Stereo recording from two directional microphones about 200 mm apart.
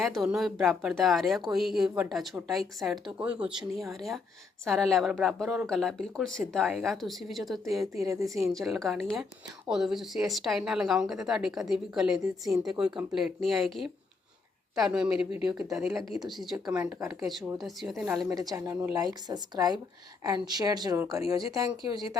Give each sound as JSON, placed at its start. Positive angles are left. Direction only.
{"t": 0.0, "sound": "a woman's voice", "side_deg": 0}
{"t": 7.9, "sound": "speech", "side_deg": -15}
{"t": 8.4, "sound": "a woman's voice", "side_deg": 0}
{"t": 18.3, "sound": "a woman's voice", "side_deg": -15}